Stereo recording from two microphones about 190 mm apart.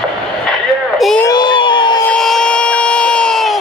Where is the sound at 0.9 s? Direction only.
Centre (ahead or behind).